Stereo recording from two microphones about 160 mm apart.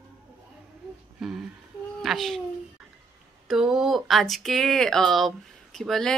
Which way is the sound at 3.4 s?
Centre (ahead or behind).